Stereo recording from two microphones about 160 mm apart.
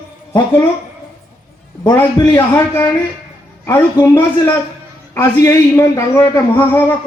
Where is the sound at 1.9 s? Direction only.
15° left (ahead or behind).